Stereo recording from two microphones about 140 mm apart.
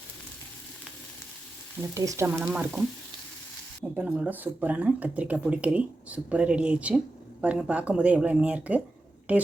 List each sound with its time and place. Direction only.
2.0 s sizzle: 20° right (ahead or behind)
2.4 s speech: 5° right (ahead or behind)
3.9 s speech: 10° right (ahead or behind)